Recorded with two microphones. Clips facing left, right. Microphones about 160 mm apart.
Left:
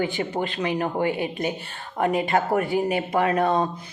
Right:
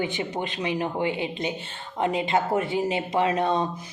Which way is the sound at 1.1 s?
20° right (ahead or behind).